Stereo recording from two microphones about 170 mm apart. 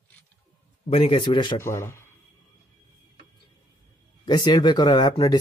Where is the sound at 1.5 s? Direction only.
15° left (ahead or behind).